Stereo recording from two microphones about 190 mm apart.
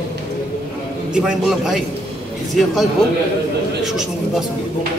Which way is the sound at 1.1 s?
5° right (ahead or behind).